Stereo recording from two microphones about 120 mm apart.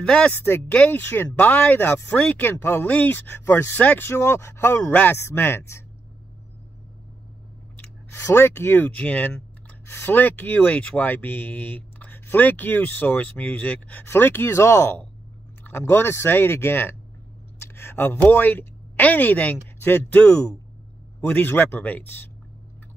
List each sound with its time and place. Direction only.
0.0 s speech: 10° left (ahead or behind)
7.7 s a woman's voice: 20° left (ahead or behind)